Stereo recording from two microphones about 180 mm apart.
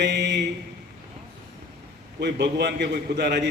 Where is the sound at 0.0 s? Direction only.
70° right (ahead or behind).